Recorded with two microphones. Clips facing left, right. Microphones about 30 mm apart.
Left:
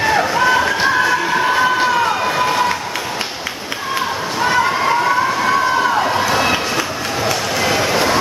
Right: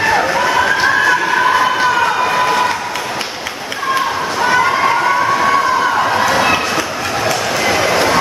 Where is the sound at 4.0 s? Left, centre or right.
Centre.